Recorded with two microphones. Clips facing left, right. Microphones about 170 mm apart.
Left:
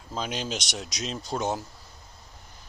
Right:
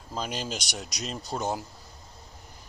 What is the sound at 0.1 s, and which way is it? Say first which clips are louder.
Speech: left 1 dB; 5° right (ahead or behind).